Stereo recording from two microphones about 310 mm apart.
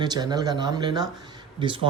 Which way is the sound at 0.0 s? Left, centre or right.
Centre.